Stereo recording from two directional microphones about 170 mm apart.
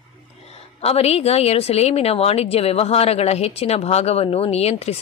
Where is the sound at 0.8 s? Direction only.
35° left (ahead or behind).